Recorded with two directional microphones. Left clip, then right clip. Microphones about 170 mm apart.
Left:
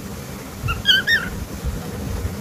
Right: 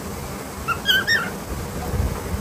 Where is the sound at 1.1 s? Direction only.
5° right (ahead or behind).